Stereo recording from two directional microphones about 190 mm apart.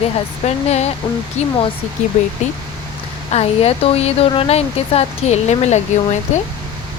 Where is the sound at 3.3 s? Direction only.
35° left (ahead or behind).